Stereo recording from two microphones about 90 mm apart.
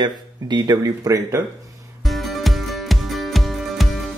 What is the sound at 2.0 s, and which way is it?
Music, centre (ahead or behind).